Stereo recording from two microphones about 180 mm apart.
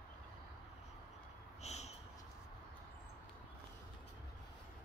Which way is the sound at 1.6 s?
35° left (ahead or behind).